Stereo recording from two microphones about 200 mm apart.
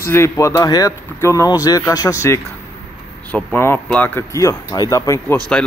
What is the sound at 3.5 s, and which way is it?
Speech, 10° left (ahead or behind).